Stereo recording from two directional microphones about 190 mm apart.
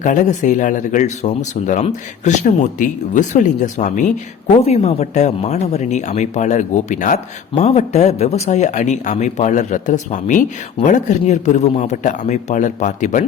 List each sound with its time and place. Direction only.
0.0 s speech: 40° left (ahead or behind)